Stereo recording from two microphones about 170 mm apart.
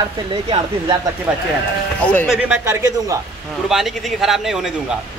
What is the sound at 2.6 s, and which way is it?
Speech, 15° right (ahead or behind).